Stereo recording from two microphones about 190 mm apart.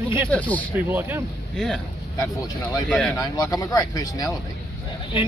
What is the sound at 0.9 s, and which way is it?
Speech, 10° right (ahead or behind).